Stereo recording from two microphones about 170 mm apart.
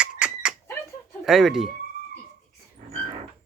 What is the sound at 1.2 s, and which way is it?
Speech, centre (ahead or behind).